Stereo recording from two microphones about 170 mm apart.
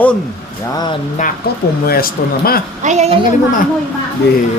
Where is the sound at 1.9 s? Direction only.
60° left (ahead or behind).